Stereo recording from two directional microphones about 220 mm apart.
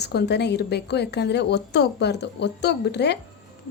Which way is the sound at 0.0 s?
50° left (ahead or behind).